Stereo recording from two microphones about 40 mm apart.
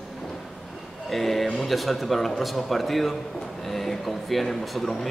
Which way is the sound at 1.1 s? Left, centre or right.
Centre.